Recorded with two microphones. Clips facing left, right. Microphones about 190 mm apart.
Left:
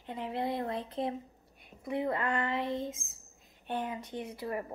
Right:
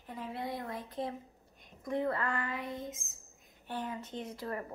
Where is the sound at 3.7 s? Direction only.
20° left (ahead or behind).